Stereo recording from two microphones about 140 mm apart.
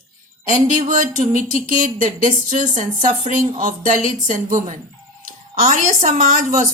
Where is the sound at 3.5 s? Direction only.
65° right (ahead or behind).